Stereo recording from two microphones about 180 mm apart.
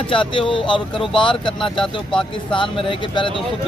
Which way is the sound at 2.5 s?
30° left (ahead or behind).